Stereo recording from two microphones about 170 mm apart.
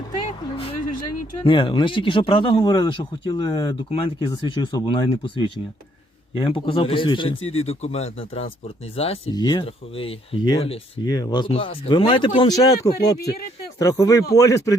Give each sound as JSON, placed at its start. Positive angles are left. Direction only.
{"t": 0.3, "sound": "vehicle", "side_deg": 35}
{"t": 1.5, "sound": "speech", "side_deg": 30}
{"t": 9.3, "sound": "speech", "side_deg": 25}